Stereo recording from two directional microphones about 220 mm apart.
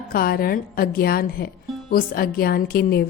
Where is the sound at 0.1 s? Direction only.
40° left (ahead or behind).